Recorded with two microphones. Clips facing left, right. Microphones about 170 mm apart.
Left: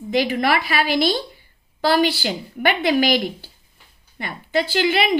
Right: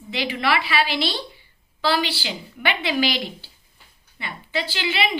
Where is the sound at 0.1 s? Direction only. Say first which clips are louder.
Left 4 dB; 45° left (ahead or behind).